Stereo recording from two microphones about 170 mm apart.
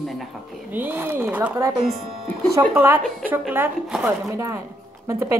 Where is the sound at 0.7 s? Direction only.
10° right (ahead or behind).